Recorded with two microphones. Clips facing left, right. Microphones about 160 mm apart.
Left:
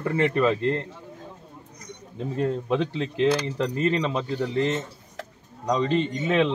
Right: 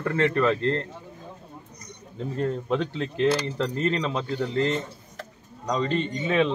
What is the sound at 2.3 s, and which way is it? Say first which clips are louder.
Speech: left 1 dB; 15° left (ahead or behind).